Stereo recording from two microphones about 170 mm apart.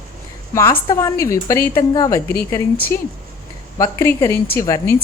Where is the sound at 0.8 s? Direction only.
20° left (ahead or behind).